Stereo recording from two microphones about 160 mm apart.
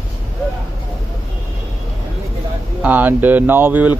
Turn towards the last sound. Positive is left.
turn(degrees=-10)  # may be behind; listen again after turning